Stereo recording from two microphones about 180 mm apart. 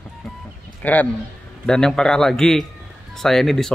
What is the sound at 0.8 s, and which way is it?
Speech, 10° left (ahead or behind).